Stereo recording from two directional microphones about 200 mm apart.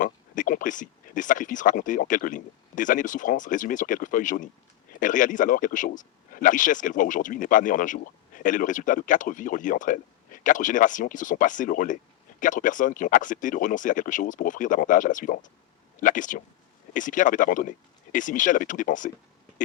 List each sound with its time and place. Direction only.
0.0 s speech: 40° left (ahead or behind)